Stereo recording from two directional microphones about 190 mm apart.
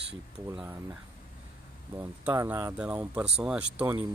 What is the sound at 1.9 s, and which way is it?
Speech, 10° right (ahead or behind).